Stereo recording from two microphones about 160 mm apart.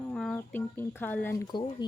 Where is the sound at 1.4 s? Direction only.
30° left (ahead or behind).